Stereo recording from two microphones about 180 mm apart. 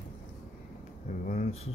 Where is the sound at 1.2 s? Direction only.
40° left (ahead or behind).